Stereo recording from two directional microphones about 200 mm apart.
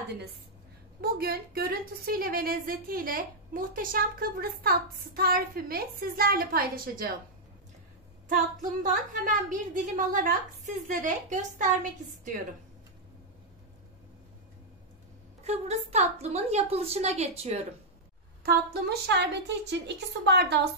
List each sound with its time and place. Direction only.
1.0 s a woman's voice: 50° right (ahead or behind)
9.2 s a woman's voice: 40° right (ahead or behind)
15.4 s a woman's voice: 35° right (ahead or behind)
18.4 s a woman's voice: 50° right (ahead or behind)